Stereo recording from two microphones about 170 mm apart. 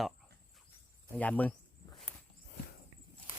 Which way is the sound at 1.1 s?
10° left (ahead or behind).